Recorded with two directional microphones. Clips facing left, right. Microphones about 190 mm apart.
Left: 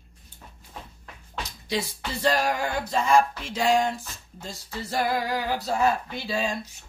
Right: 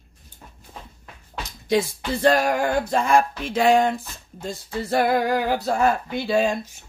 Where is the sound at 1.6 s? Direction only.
55° right (ahead or behind).